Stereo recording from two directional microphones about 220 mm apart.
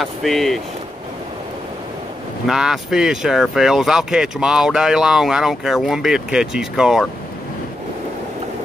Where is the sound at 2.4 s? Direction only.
Centre (ahead or behind).